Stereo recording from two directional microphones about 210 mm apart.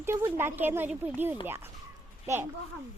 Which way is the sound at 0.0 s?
10° right (ahead or behind).